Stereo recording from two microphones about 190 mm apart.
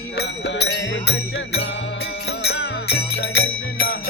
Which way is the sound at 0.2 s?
65° left (ahead or behind).